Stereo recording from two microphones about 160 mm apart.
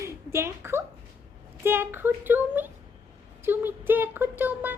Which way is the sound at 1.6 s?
15° right (ahead or behind).